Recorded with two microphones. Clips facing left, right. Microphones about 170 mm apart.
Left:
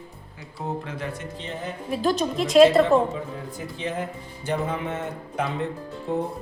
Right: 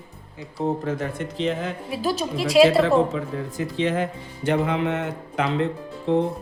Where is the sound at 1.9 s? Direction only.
5° right (ahead or behind).